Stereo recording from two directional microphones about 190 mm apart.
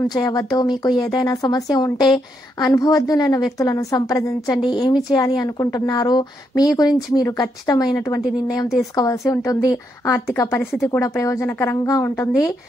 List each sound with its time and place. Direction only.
0.1 s a woman's voice: 20° left (ahead or behind)